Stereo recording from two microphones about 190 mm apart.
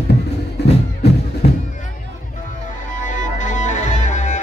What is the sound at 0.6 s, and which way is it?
Music, 60° left (ahead or behind).